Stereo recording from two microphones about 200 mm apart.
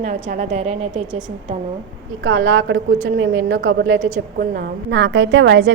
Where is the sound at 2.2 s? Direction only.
70° right (ahead or behind).